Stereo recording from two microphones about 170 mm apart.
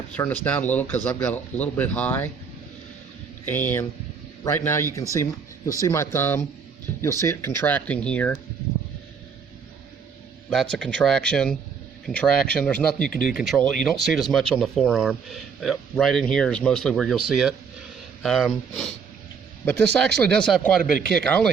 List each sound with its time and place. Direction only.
0.2 s speech: 10° left (ahead or behind)
3.4 s speech: 10° left (ahead or behind)
10.5 s a man's voice: 5° left (ahead or behind)